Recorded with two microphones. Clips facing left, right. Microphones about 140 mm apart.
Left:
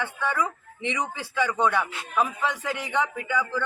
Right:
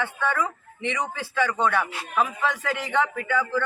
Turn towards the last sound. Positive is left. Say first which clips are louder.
# right 2 dB
turn(degrees=10)  # may be behind; listen again after turning